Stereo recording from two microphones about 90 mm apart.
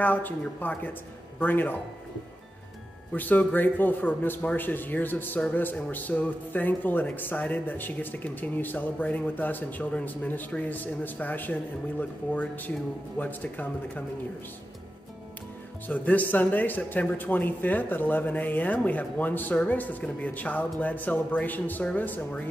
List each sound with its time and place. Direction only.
0.0 s speech: 20° left (ahead or behind)
3.1 s speech: 20° left (ahead or behind)
15.9 s speech: 15° left (ahead or behind)